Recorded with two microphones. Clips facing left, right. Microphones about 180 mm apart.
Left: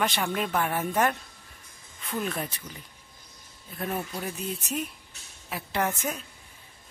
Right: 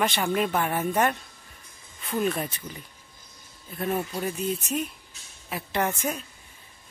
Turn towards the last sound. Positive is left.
turn(degrees=0)  # may be behind; listen again after turning